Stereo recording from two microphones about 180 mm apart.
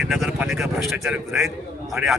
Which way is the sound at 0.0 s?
Centre (ahead or behind).